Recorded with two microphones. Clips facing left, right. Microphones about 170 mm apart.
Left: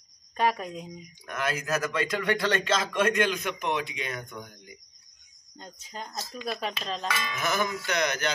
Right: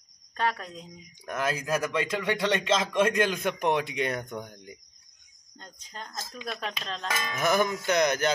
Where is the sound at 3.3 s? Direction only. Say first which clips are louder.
Right 3 dB; 55° right (ahead or behind).